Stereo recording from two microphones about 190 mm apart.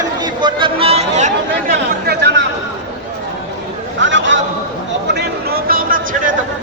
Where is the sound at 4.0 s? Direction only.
75° right (ahead or behind).